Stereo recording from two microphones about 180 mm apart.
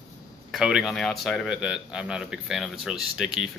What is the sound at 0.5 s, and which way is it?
Speech, centre (ahead or behind).